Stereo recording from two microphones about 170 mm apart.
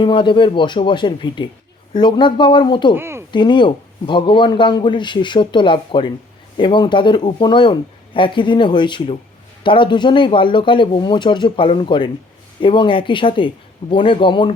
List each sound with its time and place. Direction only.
0.0 s speech: 30° left (ahead or behind)
2.9 s speech: 15° right (ahead or behind)
3.3 s speech: 30° left (ahead or behind)